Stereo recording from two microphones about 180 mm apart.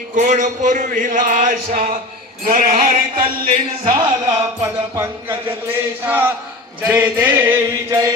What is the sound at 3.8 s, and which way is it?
Music, 25° right (ahead or behind).